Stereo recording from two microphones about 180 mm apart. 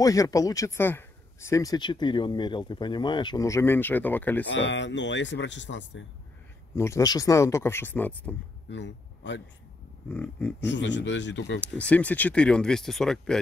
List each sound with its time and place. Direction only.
0.0 s speech: 20° left (ahead or behind)
4.5 s speech: 90° left
6.7 s speech: 15° left (ahead or behind)
8.6 s a man's voice: 85° left
10.0 s speech: 10° left (ahead or behind)
10.6 s speech: 80° left
11.6 s speech: 10° left (ahead or behind)